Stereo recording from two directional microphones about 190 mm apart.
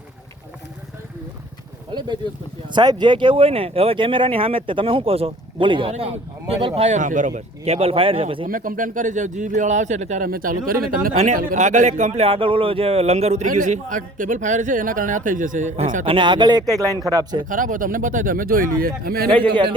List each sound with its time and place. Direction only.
1.9 s a man's voice: 25° right (ahead or behind)
8.4 s a man's voice: 45° right (ahead or behind)
11.1 s a man's voice: 35° right (ahead or behind)
16.0 s speech: 25° right (ahead or behind)
17.4 s speech: 45° right (ahead or behind)
19.3 s speech: 25° right (ahead or behind)